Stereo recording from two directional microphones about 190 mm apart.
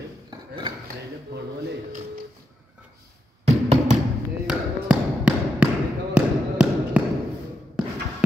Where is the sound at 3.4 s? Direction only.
35° right (ahead or behind).